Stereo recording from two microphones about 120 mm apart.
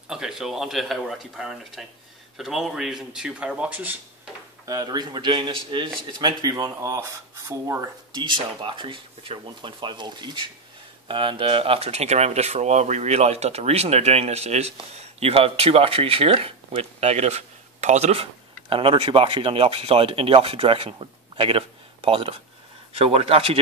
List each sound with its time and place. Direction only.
0.1 s speech: 5° right (ahead or behind)
4.6 s speech: 35° right (ahead or behind); by 23.6 s 50° right (ahead or behind)